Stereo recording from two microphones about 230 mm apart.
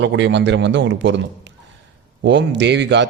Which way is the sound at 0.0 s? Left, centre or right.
Right.